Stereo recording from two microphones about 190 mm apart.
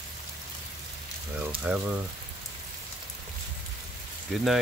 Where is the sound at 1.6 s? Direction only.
5° right (ahead or behind).